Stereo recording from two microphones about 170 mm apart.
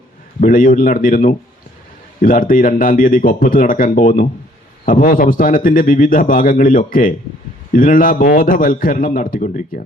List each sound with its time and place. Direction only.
0.3 s a man's voice: 55° left (ahead or behind)